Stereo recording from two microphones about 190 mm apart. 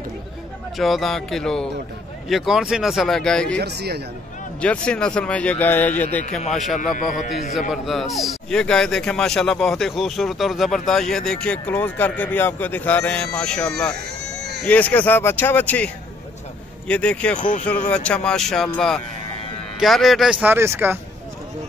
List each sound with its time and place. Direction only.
0.7 s speech: centre (ahead or behind)
3.5 s speech: 60° right (ahead or behind)
4.6 s a man's voice: 5° left (ahead or behind)
6.8 s a man's voice: 45° left (ahead or behind)
7.7 s speech: centre (ahead or behind)
13.9 s a sound: 60° right (ahead or behind)
14.7 s a man's voice: 10° left (ahead or behind)
17.4 s a man's voice: 40° left (ahead or behind)
17.6 s speech: 5° left (ahead or behind); by 21.0 s 10° right (ahead or behind)